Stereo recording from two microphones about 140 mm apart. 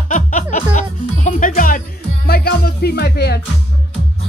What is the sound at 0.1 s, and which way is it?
Music, 65° left (ahead or behind).